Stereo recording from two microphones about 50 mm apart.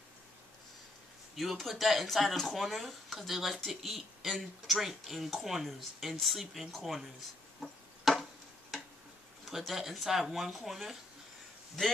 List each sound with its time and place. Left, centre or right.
1.3 s speech: centre
7.6 s a sound: centre
9.6 s speech: centre
11.8 s a man's voice: centre